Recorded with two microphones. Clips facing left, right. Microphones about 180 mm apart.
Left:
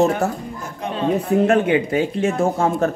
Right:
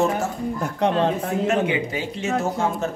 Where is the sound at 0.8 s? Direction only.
75° right (ahead or behind).